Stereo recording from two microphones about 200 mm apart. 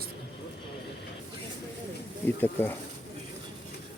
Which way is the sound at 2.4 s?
10° left (ahead or behind).